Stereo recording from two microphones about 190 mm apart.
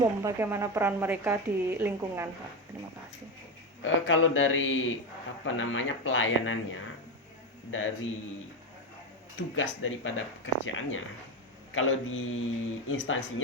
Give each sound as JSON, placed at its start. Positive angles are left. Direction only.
{"t": 0.0, "sound": "a woman's voice", "side_deg": -15}
{"t": 3.8, "sound": "speech", "side_deg": 90}
{"t": 7.7, "sound": "speech", "side_deg": 90}
{"t": 9.6, "sound": "speech", "side_deg": 90}